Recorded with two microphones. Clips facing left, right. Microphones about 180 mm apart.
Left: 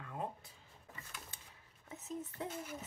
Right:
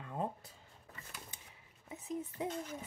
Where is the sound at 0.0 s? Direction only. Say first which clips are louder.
Right 4 dB; 30° right (ahead or behind).